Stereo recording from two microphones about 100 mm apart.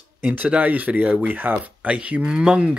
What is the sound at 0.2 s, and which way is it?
Speech, 15° right (ahead or behind).